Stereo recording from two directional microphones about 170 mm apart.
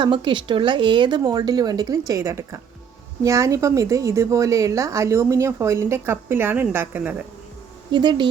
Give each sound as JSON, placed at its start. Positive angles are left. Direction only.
{"t": 0.0, "sound": "a woman's voice", "side_deg": -30}
{"t": 7.9, "sound": "speech", "side_deg": -25}